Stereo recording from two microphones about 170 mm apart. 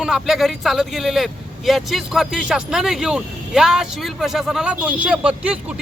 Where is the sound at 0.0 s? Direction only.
Centre (ahead or behind).